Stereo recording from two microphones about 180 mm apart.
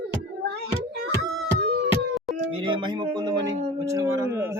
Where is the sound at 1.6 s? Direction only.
65° right (ahead or behind).